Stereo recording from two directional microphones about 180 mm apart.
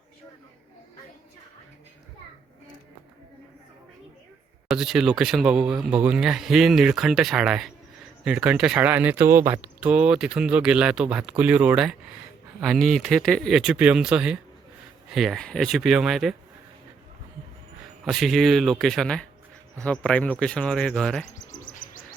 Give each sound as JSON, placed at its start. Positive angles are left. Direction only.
{"t": 4.7, "sound": "speech", "side_deg": -5}
{"t": 18.0, "sound": "speech", "side_deg": 0}
{"t": 21.3, "sound": "bird", "side_deg": 45}